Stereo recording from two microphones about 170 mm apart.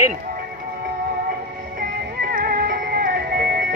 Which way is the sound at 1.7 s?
55° right (ahead or behind).